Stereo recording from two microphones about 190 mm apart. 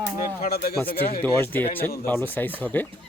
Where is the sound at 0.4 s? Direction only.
55° left (ahead or behind).